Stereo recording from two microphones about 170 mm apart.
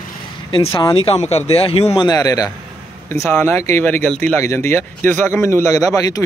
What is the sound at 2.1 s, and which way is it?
Speech, 20° left (ahead or behind).